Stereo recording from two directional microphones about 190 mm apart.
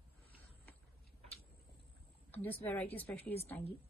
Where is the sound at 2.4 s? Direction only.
10° left (ahead or behind).